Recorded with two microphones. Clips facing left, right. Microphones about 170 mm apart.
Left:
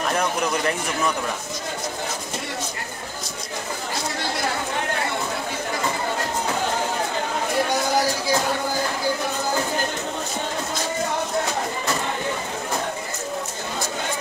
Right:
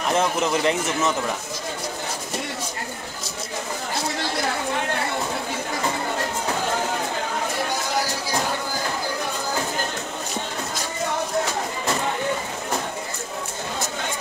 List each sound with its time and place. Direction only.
0.1 s a man's voice: 20° right (ahead or behind)